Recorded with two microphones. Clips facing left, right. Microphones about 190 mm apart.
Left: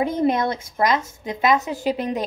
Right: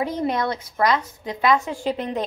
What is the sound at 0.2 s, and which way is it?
A woman's voice, 25° left (ahead or behind).